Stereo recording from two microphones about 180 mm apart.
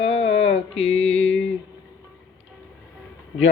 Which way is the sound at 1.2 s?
90° left.